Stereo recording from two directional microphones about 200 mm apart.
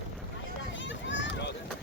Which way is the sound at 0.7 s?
65° left (ahead or behind).